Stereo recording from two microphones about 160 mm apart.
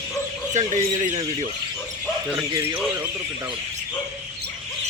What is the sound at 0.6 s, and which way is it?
Speech, 50° right (ahead or behind).